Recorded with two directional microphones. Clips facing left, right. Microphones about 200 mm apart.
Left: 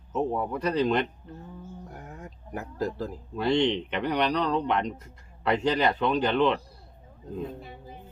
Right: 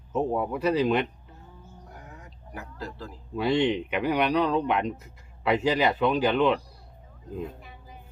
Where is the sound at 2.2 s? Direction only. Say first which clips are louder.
Left 6 dB; 45° left (ahead or behind).